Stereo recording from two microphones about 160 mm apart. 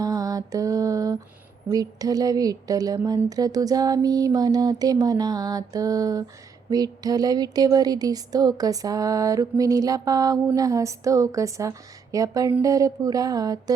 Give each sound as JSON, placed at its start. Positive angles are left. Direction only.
{"t": 0.0, "sound": "mantra", "side_deg": -20}
{"t": 1.6, "sound": "speech", "side_deg": -25}